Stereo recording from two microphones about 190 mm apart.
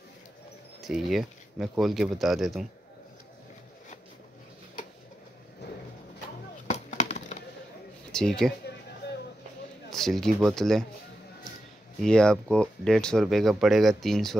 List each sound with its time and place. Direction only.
0.7 s speech: centre (ahead or behind)
6.7 s chop: 35° left (ahead or behind)
8.1 s speech: 5° left (ahead or behind)
9.8 s speech: centre (ahead or behind)
12.0 s speech: 5° left (ahead or behind)